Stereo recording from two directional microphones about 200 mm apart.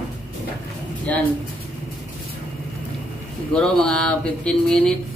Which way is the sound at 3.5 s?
5° left (ahead or behind).